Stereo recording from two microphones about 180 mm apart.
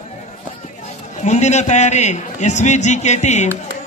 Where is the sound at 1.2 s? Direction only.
40° left (ahead or behind).